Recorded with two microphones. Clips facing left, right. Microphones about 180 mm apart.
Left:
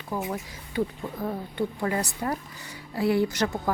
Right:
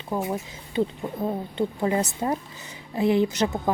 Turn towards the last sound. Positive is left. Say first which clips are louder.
# right 2 dB
turn(degrees=-20)  # may be behind; listen again after turning